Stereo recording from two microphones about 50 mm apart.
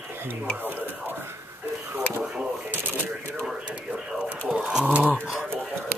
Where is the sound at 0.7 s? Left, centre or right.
Right.